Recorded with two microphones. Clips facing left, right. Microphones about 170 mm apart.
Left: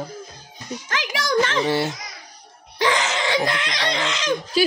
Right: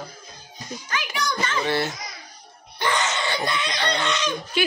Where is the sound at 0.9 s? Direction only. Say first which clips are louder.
Left 6 dB; 90° left.